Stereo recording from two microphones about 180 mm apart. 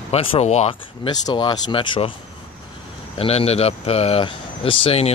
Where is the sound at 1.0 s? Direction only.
25° left (ahead or behind).